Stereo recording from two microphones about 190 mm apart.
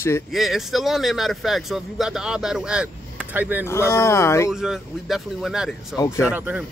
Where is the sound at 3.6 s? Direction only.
15° left (ahead or behind).